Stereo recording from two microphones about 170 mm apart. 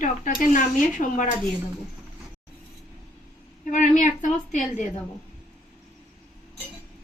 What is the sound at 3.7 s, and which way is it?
Speech, 45° left (ahead or behind).